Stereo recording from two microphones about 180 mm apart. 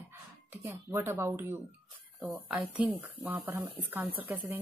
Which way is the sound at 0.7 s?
15° right (ahead or behind).